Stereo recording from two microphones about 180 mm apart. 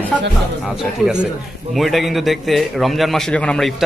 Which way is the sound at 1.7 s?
Centre (ahead or behind).